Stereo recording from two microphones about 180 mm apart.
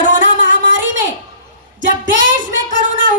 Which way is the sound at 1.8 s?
45° right (ahead or behind).